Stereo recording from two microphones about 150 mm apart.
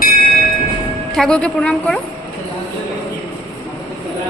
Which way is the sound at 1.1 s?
5° left (ahead or behind).